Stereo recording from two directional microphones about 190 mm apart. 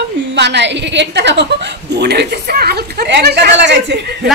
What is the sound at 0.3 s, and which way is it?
A woman's voice, 65° right (ahead or behind).